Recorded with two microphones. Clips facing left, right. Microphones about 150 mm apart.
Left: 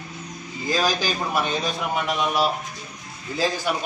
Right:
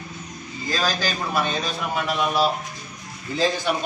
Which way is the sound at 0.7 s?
15° left (ahead or behind).